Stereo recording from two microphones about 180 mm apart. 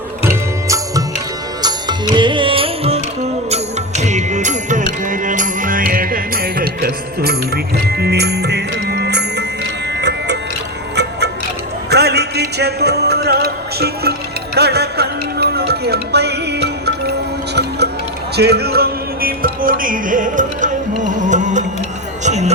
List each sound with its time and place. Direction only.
0.2 s music: 15° right (ahead or behind); by 10.3 s 70° right (ahead or behind)
11.9 s music: 65° right (ahead or behind); by 21.6 s 45° right (ahead or behind)
22.2 s a sound: 40° right (ahead or behind)